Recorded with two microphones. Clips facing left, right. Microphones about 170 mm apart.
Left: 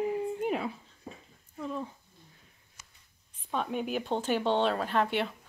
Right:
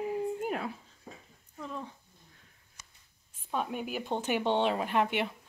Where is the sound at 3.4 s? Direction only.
5° right (ahead or behind).